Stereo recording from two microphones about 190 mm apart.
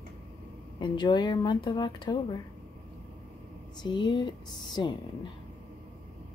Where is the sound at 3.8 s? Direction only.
25° left (ahead or behind).